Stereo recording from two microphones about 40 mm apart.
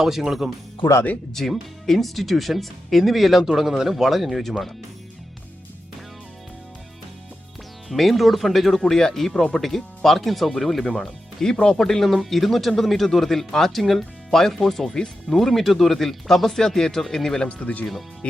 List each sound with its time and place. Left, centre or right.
0.0 s speech: centre
1.3 s speech: centre
7.9 s speech: centre
8.8 s speech: centre
11.5 s speech: left
11.8 s speech: centre
17.6 s speech: left